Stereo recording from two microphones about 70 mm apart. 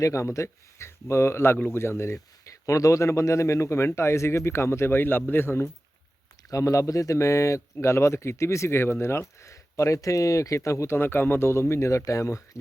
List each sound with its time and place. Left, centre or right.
0.0 s speech: left
2.6 s speech: left
6.5 s speech: left